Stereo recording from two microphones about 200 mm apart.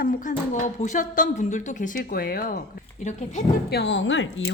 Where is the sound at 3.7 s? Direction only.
60° left (ahead or behind).